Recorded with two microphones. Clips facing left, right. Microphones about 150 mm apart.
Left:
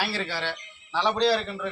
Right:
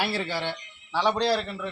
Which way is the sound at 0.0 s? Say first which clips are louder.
Right 2 dB; 15° right (ahead or behind).